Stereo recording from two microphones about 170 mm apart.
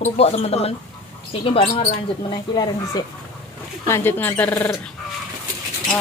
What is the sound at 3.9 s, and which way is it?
Speech, 10° left (ahead or behind).